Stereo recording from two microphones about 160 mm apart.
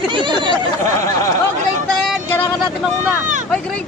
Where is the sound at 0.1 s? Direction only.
30° right (ahead or behind).